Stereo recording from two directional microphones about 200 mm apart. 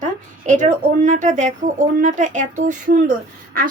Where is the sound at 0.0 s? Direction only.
40° right (ahead or behind).